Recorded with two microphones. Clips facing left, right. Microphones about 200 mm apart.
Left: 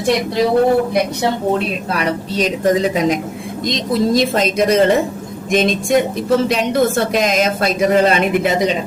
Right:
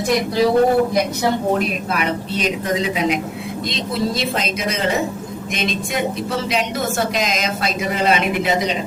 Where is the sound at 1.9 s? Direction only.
40° left (ahead or behind).